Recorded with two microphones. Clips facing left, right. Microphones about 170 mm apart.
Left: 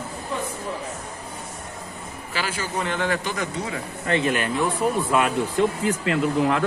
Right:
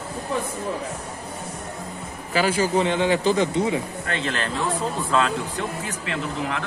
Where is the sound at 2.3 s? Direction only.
40° right (ahead or behind).